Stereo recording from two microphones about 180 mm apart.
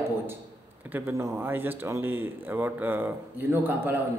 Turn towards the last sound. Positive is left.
turn(degrees=-10)  # may be behind; listen again after turning